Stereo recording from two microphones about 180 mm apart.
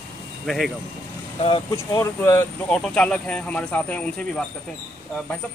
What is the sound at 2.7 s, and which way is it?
Speech, 5° left (ahead or behind).